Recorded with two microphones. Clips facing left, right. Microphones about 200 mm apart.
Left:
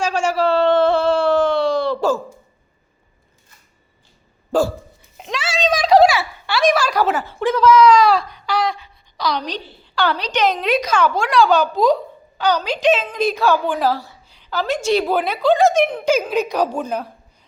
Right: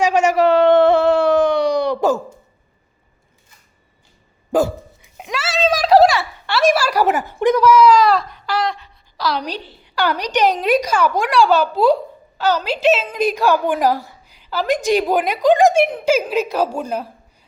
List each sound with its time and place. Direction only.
0.0 s a sound: 20° right (ahead or behind)
4.5 s hiccup: 15° right (ahead or behind)
12.4 s a woman's voice: 5° right (ahead or behind)